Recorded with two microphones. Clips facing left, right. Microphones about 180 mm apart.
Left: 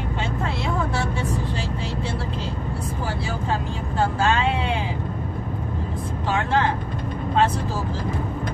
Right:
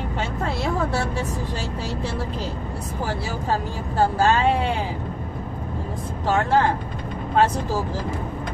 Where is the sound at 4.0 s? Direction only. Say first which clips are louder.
Right 3 dB; 40° right (ahead or behind).